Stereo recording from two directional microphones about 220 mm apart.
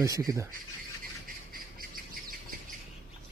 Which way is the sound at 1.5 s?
40° right (ahead or behind).